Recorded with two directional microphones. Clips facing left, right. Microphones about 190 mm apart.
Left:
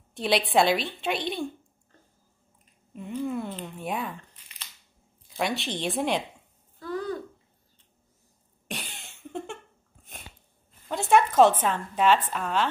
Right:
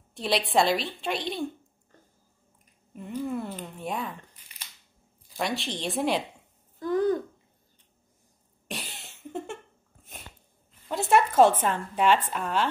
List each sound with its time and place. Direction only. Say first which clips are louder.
0.1 s a woman's voice: left 2 dB; centre (ahead or behind)
3.1 s a sound: left 1 dB; 5° right (ahead or behind)
3.7 s speech: left 1 dB; centre (ahead or behind)
5.4 s a woman's voice: left 2 dB; centre (ahead or behind)
6.8 s a sound: right 7 dB; 20° right (ahead or behind)
8.6 s cough: even; centre (ahead or behind)
10.9 s a woman's voice: left 1 dB; 5° right (ahead or behind)